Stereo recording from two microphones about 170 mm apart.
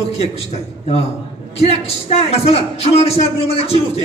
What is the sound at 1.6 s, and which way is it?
Speech, 35° left (ahead or behind).